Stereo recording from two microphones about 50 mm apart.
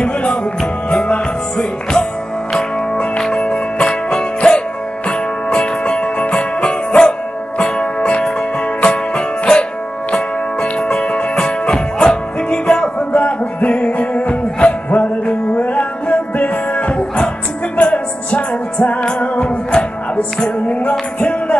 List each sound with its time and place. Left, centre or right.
0.0 s music: left
3.0 s music: centre